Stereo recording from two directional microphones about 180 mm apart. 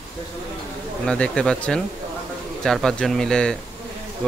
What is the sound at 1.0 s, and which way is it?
Speech, 5° left (ahead or behind).